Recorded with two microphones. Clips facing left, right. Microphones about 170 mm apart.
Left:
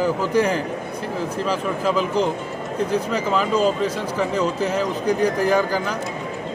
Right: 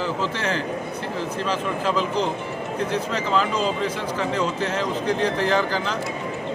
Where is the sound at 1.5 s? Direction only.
10° left (ahead or behind).